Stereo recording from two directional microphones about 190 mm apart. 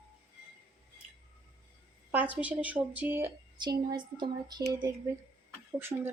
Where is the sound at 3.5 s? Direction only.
25° right (ahead or behind).